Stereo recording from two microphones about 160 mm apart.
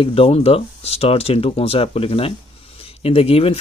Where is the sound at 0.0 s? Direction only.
35° left (ahead or behind).